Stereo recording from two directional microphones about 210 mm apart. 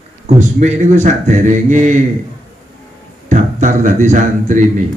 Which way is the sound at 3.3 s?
35° right (ahead or behind).